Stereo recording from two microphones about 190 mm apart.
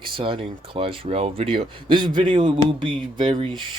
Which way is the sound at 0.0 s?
25° right (ahead or behind).